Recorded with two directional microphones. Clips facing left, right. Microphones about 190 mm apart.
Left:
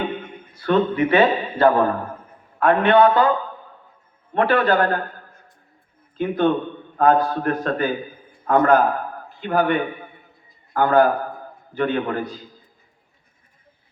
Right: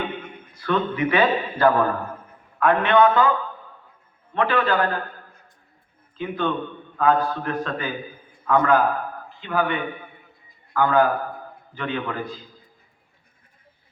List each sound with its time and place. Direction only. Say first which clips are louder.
0.6 s a man's voice: left 4 dB; 30° left (ahead or behind)
4.4 s a man's voice: left 3 dB; 45° left (ahead or behind)
6.1 s a man's voice: left 6 dB; 45° left (ahead or behind)